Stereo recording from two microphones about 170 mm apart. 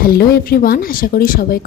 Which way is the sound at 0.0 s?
60° left (ahead or behind).